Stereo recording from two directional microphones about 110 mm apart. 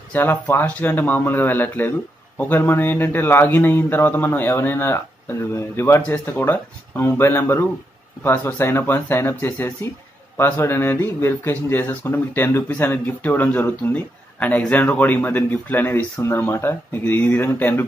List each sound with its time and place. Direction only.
0.1 s speech: 20° left (ahead or behind)